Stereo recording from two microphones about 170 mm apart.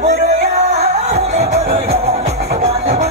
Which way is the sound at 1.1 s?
40° right (ahead or behind).